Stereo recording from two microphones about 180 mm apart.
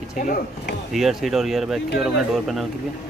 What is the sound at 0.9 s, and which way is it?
Speech, centre (ahead or behind).